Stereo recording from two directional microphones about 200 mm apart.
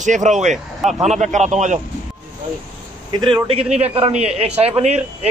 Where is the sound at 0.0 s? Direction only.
35° right (ahead or behind).